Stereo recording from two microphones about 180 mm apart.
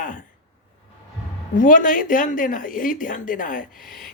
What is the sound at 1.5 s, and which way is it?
Speech, 50° left (ahead or behind).